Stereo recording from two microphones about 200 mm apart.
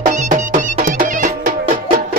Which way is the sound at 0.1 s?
40° right (ahead or behind).